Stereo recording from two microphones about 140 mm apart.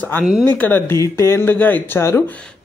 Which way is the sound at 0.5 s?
15° left (ahead or behind).